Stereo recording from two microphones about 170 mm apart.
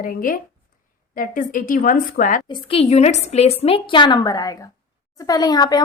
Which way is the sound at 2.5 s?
30° left (ahead or behind).